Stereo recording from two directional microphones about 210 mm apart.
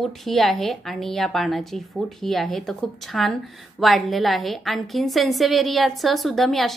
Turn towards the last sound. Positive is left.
turn(degrees=0)  # may be behind; listen again after turning